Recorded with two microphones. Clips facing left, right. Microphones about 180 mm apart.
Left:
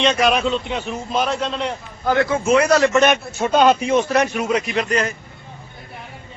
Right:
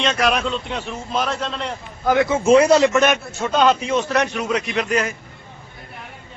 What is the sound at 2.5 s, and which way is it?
Speech, 30° right (ahead or behind).